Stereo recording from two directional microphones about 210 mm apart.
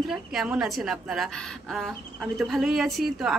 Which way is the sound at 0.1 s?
Centre (ahead or behind).